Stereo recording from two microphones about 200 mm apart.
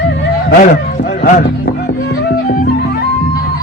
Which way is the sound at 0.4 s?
45° left (ahead or behind).